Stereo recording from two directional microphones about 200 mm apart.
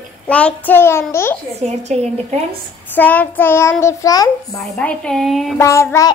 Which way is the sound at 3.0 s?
10° left (ahead or behind).